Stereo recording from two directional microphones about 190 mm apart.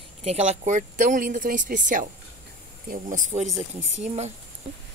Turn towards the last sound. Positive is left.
turn(degrees=-35)  # may be behind; listen again after turning